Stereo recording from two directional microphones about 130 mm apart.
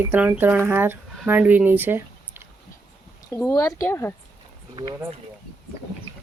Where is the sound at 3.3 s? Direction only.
25° left (ahead or behind).